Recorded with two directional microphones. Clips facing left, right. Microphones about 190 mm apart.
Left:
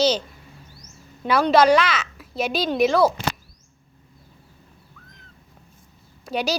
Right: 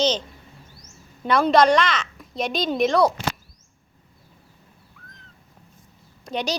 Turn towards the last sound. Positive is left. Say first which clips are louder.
# left 2 dB
turn(degrees=5)  # may be behind; listen again after turning